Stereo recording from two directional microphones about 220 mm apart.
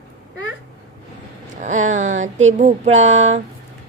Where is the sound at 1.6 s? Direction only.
35° right (ahead or behind).